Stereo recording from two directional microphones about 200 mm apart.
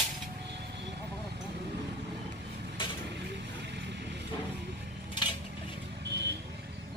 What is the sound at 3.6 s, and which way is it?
Vehicle, 60° right (ahead or behind).